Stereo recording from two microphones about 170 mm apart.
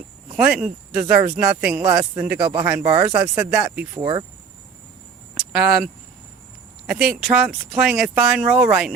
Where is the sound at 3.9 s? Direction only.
25° right (ahead or behind).